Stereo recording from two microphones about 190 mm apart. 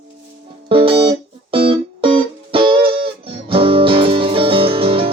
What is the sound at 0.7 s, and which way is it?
Music, 30° right (ahead or behind).